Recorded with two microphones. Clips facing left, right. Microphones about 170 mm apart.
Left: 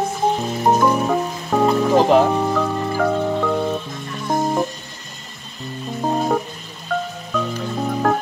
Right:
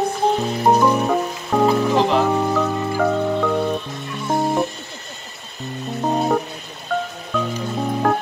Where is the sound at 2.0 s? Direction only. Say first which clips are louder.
Left 7 dB; 45° left (ahead or behind).